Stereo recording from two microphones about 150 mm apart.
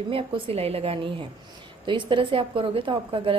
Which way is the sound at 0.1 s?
40° right (ahead or behind).